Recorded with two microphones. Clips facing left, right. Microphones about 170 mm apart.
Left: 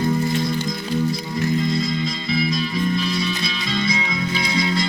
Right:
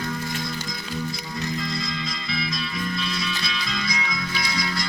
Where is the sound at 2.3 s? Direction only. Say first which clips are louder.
Left 8 dB; 30° left (ahead or behind).